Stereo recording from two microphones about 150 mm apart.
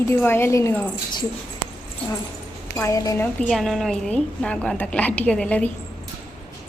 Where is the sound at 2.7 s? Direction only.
20° left (ahead or behind).